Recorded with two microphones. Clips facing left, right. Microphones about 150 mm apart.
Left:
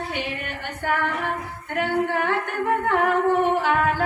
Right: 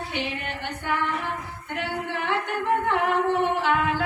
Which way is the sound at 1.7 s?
45° left (ahead or behind).